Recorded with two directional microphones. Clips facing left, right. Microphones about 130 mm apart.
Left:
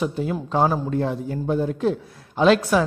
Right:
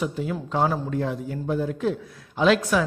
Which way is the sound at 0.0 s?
35° left (ahead or behind).